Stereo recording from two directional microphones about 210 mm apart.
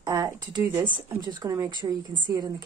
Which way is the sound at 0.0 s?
15° right (ahead or behind).